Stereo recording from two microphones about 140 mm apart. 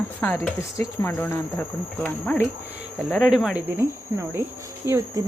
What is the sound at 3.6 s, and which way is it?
Speech, 20° right (ahead or behind).